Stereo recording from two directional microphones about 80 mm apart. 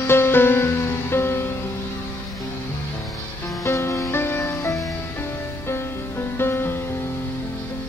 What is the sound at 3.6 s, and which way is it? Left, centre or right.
Music, left.